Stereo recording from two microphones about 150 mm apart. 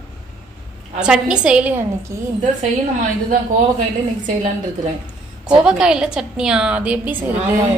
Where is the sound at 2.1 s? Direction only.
20° right (ahead or behind).